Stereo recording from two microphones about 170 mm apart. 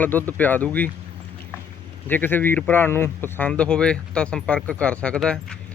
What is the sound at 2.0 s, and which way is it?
Speech, 10° left (ahead or behind).